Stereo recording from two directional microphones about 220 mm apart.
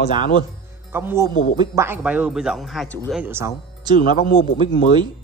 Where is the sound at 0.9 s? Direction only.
10° right (ahead or behind).